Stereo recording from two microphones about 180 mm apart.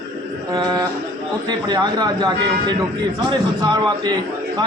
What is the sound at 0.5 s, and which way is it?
A man's voice, 20° right (ahead or behind).